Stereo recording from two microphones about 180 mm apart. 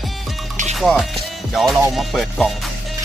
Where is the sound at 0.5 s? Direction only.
40° right (ahead or behind).